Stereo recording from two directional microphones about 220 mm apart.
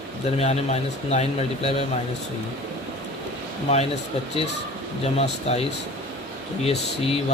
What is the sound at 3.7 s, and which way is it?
Speech, 30° left (ahead or behind).